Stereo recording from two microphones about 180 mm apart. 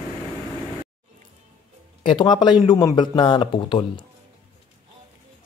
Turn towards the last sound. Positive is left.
turn(degrees=30)  # may be behind; listen again after turning